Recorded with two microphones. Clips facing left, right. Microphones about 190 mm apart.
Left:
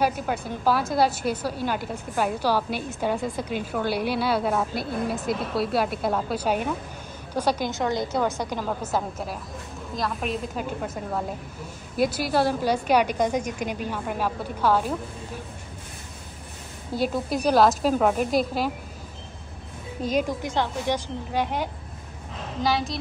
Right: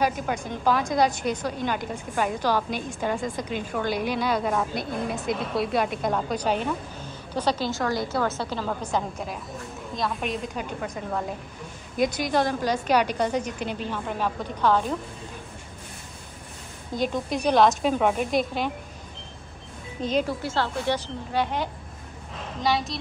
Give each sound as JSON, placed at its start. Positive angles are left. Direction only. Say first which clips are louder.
{"t": 0.0, "sound": "a woman's voice", "louder": "left 1 dB", "side_deg": 5}
{"t": 16.9, "sound": "a woman's voice", "louder": "left 1 dB", "side_deg": 5}
{"t": 20.0, "sound": "a woman's voice", "louder": "even", "side_deg": 10}